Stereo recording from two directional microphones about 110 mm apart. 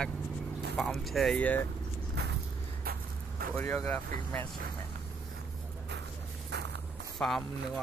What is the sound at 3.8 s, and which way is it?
Speech, 20° left (ahead or behind).